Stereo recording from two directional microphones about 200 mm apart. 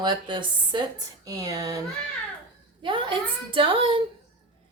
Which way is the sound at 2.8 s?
25° right (ahead or behind).